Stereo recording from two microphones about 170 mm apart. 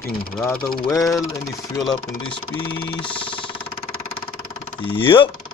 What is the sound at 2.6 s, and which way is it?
Vehicle, 30° left (ahead or behind).